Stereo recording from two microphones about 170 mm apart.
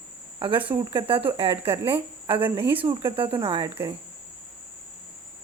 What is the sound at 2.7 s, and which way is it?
Speech, 30° right (ahead or behind).